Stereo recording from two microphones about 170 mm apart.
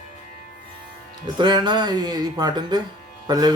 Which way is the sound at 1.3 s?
25° right (ahead or behind).